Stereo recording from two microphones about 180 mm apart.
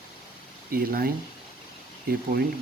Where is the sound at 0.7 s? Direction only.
55° right (ahead or behind).